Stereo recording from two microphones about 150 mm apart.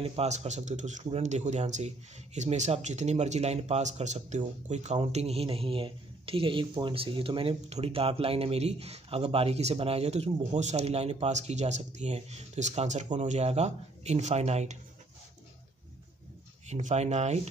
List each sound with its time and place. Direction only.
0.0 s a man's voice: 40° right (ahead or behind)
16.6 s a man's voice: 50° right (ahead or behind)